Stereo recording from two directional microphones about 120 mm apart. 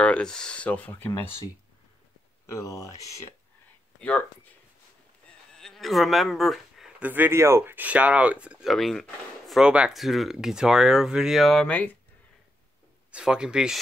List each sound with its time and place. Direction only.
0.0 s speech: 10° left (ahead or behind)
2.4 s speech: 25° left (ahead or behind)
4.0 s speech: 15° left (ahead or behind)
5.6 s speech: centre (ahead or behind)
7.0 s speech: 15° right (ahead or behind); by 9.6 s 5° left (ahead or behind)
9.6 s speech: 5° right (ahead or behind)
13.1 s speech: 5° right (ahead or behind)